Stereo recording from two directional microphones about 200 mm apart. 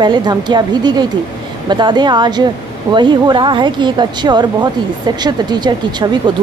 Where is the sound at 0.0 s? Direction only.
20° right (ahead or behind).